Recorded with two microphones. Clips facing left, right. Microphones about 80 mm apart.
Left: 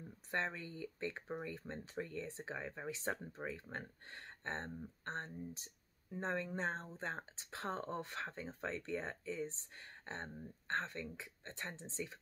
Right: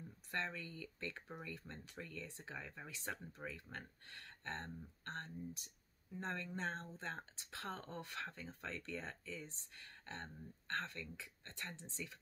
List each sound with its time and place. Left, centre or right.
0.3 s speech: left